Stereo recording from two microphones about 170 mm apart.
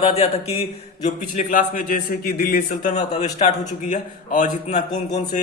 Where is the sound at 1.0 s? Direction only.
50° left (ahead or behind).